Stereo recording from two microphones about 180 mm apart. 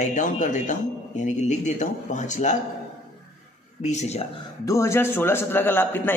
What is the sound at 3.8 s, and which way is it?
Speech, 40° left (ahead or behind).